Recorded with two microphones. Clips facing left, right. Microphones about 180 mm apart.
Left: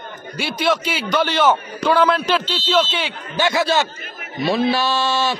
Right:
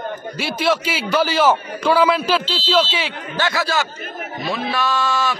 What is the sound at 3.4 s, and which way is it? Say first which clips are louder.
A man's voice: left 3 dB; 20° left (ahead or behind).